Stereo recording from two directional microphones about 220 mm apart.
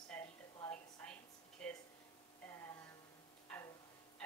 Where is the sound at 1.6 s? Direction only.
5° left (ahead or behind).